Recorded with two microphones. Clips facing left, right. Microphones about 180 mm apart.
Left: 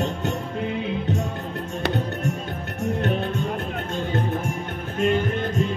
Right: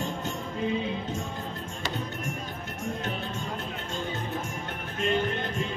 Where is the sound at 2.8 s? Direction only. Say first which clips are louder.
Left 9 dB; 65° left (ahead or behind).